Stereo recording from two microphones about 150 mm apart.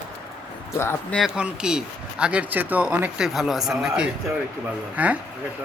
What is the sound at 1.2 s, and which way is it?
Speech, 5° right (ahead or behind).